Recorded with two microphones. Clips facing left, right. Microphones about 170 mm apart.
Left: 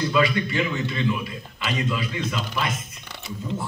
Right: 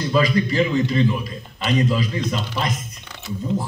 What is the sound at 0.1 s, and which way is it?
A man's voice, 35° right (ahead or behind).